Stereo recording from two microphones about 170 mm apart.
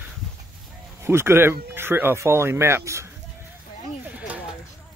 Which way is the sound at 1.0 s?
15° right (ahead or behind).